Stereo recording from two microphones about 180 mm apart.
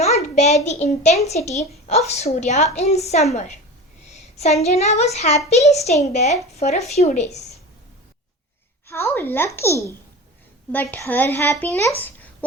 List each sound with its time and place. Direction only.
0.0 s a child's voice: 40° left (ahead or behind)
8.9 s a woman's voice: 15° left (ahead or behind)
11.9 s a sound: 10° left (ahead or behind)